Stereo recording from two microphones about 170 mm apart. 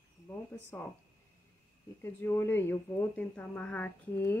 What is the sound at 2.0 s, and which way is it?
Speech, 15° left (ahead or behind).